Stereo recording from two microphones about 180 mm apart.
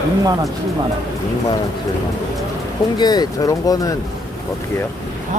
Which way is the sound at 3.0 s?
20° left (ahead or behind).